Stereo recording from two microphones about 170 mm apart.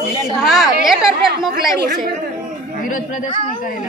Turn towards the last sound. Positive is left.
turn(degrees=50)  # may be behind; listen again after turning